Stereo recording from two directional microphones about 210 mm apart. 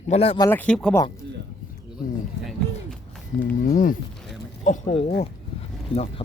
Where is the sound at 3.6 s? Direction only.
40° left (ahead or behind).